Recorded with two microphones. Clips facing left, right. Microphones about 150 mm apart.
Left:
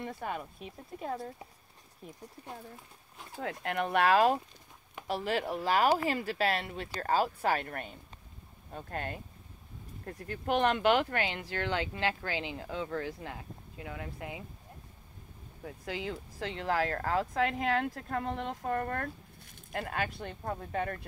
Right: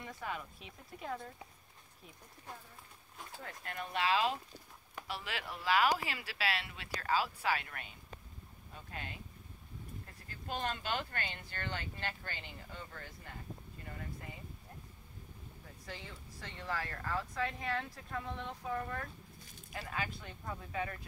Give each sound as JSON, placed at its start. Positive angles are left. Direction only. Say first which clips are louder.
{"t": 0.2, "sound": "speech", "louder": "left 5 dB", "side_deg": 45}
{"t": 3.3, "sound": "speech", "louder": "left 11 dB", "side_deg": 70}
{"t": 10.0, "sound": "speech", "louder": "left 15 dB", "side_deg": 60}
{"t": 15.6, "sound": "speech", "louder": "left 12 dB", "side_deg": 80}
{"t": 17.9, "sound": "speech", "louder": "left 7 dB", "side_deg": 60}
{"t": 18.6, "sound": "speech", "louder": "left 5 dB", "side_deg": 60}